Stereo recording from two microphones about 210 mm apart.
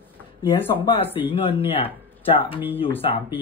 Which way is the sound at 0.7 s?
25° left (ahead or behind).